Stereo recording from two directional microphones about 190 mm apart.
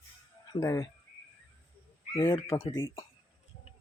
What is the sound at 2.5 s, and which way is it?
Speech, 15° left (ahead or behind).